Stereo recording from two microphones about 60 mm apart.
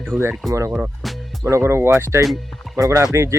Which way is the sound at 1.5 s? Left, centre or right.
Right.